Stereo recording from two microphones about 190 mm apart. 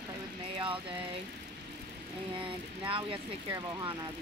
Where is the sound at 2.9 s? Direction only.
25° right (ahead or behind).